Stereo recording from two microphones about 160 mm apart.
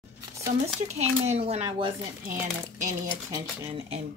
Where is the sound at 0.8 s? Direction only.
45° right (ahead or behind).